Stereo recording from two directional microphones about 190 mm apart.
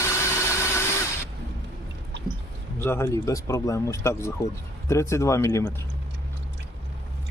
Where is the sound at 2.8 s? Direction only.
10° left (ahead or behind).